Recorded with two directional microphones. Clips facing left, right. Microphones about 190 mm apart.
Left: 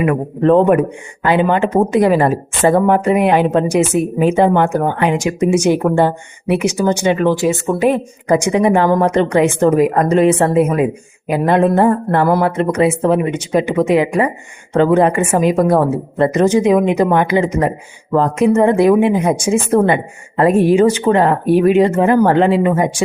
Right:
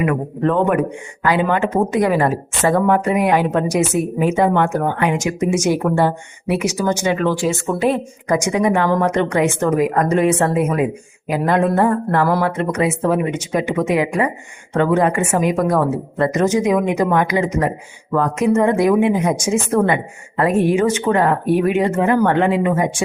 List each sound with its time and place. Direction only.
0.0 s a woman's voice: 30° left (ahead or behind); by 8.0 s 15° left (ahead or behind)
8.3 s a woman's voice: 30° left (ahead or behind)